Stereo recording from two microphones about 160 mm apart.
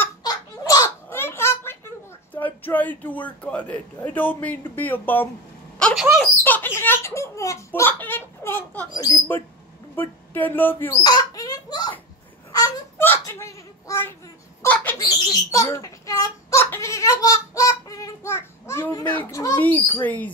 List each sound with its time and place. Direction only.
0.2 s a sound: 20° left (ahead or behind)
2.3 s a child's voice: 10° left (ahead or behind)
5.8 s a sound: 5° left (ahead or behind)
6.4 s a child's voice: 10° left (ahead or behind)
11.0 s a sound: 25° left (ahead or behind)
12.5 s wail: 25° left (ahead or behind)
13.0 s a child's voice: 15° left (ahead or behind)
14.6 s bird: 10° left (ahead or behind)
15.5 s a child's voice: 20° left (ahead or behind)